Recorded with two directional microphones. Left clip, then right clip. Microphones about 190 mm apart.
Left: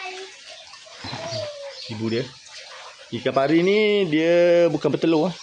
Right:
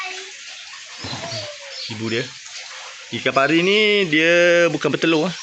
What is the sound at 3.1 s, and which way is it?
Speech, 5° left (ahead or behind).